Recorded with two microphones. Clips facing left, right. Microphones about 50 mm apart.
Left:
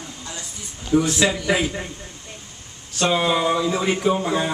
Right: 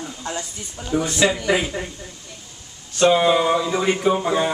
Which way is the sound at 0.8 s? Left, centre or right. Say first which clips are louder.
Left 1 dB; centre.